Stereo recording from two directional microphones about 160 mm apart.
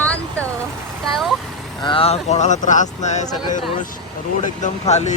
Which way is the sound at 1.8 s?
35° left (ahead or behind).